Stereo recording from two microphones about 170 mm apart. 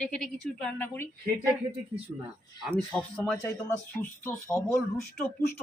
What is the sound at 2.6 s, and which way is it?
Speech, 5° left (ahead or behind).